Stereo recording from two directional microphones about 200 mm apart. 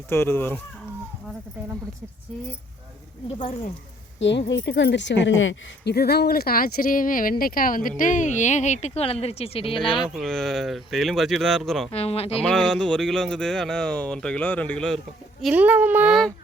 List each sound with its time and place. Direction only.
0.1 s speech: 10° left (ahead or behind)
4.2 s speech: 60° left (ahead or behind); by 9.8 s 30° left (ahead or behind)
10.1 s speech: centre (ahead or behind)
11.9 s speech: 30° left (ahead or behind)
12.4 s speech: 5° left (ahead or behind)